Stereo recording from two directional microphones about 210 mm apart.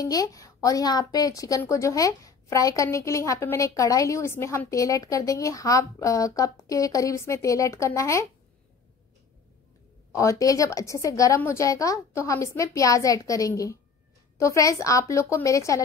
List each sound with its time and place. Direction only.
0.0 s a woman's voice: 15° left (ahead or behind)
10.1 s a woman's voice: 15° left (ahead or behind)